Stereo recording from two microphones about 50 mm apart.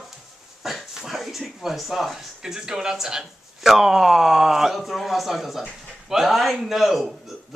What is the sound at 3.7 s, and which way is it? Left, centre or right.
Speech, centre.